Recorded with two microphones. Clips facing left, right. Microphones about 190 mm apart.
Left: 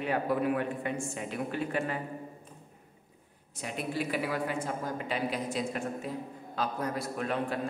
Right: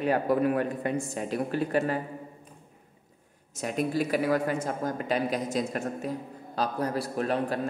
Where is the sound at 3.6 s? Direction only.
45° right (ahead or behind).